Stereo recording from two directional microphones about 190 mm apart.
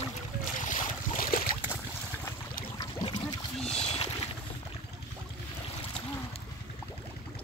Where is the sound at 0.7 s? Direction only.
50° left (ahead or behind).